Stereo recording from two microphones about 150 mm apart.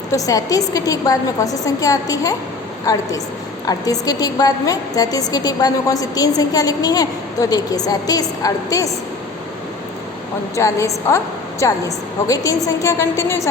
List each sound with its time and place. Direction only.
0.1 s a woman's voice: 25° left (ahead or behind)
10.5 s a woman's voice: 20° left (ahead or behind)